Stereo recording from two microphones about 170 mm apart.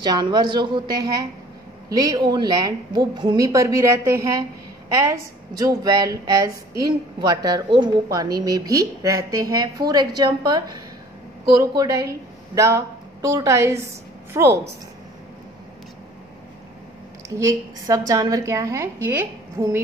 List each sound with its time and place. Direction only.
0.0 s a woman's voice: 25° right (ahead or behind)
11.7 s a woman's voice: 20° right (ahead or behind)
17.4 s a woman's voice: 20° right (ahead or behind)